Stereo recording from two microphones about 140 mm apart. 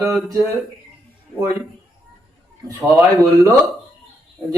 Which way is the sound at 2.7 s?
20° right (ahead or behind).